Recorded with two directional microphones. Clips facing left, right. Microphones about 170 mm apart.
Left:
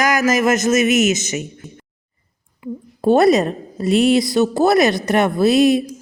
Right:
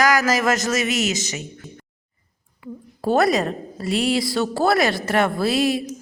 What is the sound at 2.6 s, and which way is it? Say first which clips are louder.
A woman's voice: left 7 dB; 25° left (ahead or behind).